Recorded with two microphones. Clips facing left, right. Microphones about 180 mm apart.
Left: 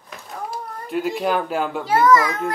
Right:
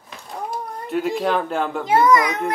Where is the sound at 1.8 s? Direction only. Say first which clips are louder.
Even; 20° right (ahead or behind).